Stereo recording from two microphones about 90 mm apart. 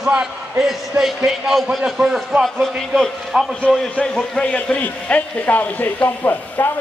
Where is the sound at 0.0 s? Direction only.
10° right (ahead or behind).